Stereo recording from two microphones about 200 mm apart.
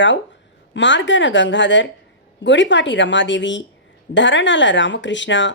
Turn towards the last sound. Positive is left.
turn(degrees=65)  # may be behind; listen again after turning